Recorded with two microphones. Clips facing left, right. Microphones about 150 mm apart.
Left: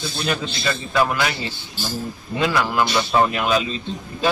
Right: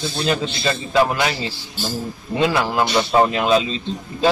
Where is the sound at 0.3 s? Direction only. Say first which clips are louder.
Right 3 dB; 25° right (ahead or behind).